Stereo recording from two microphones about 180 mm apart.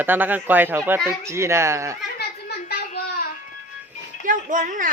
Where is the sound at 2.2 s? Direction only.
60° left (ahead or behind).